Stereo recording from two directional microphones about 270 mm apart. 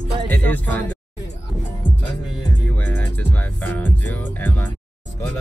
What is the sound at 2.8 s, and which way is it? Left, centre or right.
Music, centre.